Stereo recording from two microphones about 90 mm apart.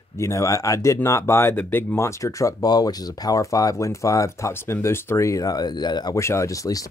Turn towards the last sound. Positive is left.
turn(degrees=40)  # may be behind; listen again after turning